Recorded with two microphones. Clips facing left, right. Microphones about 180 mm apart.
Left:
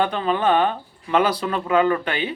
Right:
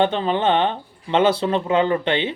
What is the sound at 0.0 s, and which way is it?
Speech, 25° right (ahead or behind).